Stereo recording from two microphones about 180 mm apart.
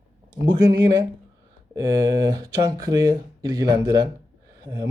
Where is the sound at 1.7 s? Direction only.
20° right (ahead or behind).